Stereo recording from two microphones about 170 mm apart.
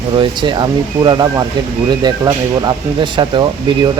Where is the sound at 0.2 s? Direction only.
25° right (ahead or behind).